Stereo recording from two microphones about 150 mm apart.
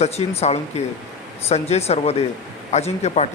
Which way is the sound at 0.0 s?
45° left (ahead or behind).